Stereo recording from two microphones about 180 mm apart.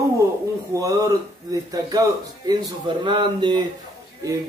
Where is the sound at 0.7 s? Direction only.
15° right (ahead or behind).